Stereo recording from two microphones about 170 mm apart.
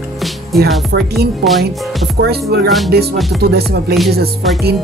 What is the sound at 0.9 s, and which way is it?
Speech, 80° right.